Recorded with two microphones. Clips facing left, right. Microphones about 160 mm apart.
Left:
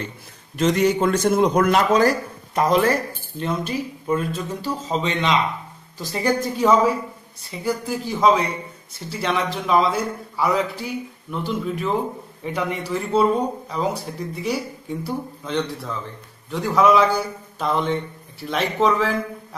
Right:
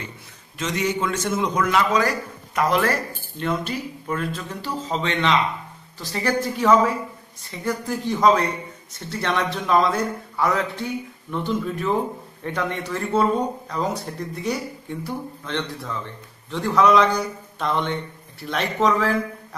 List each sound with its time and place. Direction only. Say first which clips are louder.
0.7 s a man's voice: left 6 dB; 50° left (ahead or behind)
2.6 s speech: left 3 dB; 20° left (ahead or behind); by 19.1 s centre (ahead or behind)